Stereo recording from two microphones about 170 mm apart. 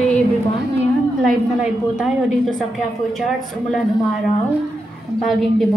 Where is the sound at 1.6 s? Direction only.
5° right (ahead or behind).